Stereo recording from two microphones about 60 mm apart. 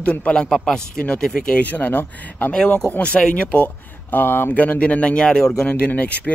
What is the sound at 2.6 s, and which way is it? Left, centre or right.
Speech, centre.